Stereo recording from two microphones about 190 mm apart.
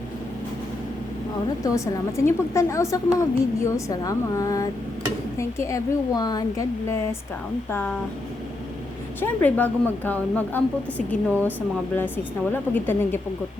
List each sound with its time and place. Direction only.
1.6 s a woman's voice: 15° left (ahead or behind)
7.7 s a woman's voice: 10° left (ahead or behind)
9.2 s a woman's voice: 10° left (ahead or behind)